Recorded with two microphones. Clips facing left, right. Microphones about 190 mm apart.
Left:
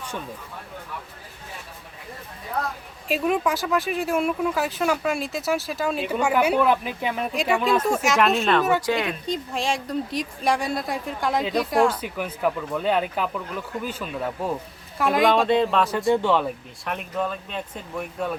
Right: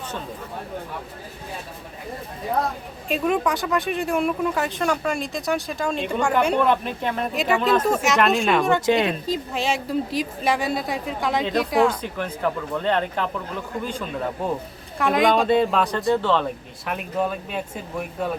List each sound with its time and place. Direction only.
3.1 s speech: centre (ahead or behind)
8.9 s speech: 25° right (ahead or behind)
9.2 s speech: 5° right (ahead or behind)
16.0 s speech: 15° left (ahead or behind)
16.8 s speech: 5° right (ahead or behind)